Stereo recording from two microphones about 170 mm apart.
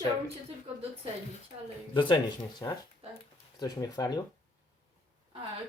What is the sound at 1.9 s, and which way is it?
Speech, 30° left (ahead or behind).